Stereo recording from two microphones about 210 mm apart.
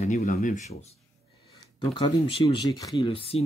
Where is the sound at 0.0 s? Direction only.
35° left (ahead or behind).